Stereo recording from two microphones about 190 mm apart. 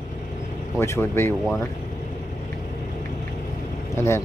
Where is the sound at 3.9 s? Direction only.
15° left (ahead or behind).